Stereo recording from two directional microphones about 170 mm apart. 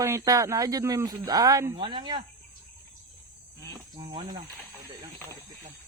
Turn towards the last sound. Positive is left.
turn(degrees=-25)  # may be behind; listen again after turning